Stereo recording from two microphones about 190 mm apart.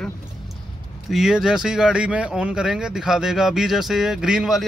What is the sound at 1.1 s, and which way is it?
A man's voice, 5° right (ahead or behind).